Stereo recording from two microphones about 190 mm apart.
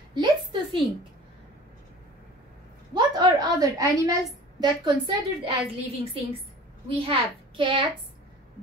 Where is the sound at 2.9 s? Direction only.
20° right (ahead or behind).